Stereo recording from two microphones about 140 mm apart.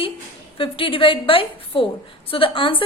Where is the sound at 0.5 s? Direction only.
40° left (ahead or behind).